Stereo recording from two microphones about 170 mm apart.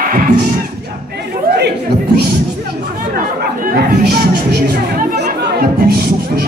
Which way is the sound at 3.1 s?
60° right (ahead or behind).